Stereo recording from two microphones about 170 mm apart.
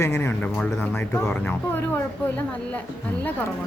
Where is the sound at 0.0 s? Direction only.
15° left (ahead or behind).